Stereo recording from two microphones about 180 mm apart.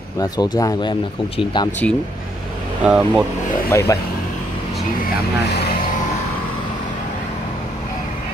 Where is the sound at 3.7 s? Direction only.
15° left (ahead or behind).